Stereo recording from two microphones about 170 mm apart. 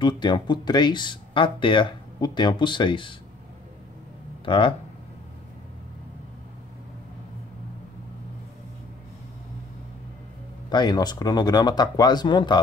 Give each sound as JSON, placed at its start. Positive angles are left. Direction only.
{"t": 0.0, "sound": "speech", "side_deg": 25}
{"t": 4.5, "sound": "speech", "side_deg": 30}
{"t": 10.7, "sound": "speech", "side_deg": 25}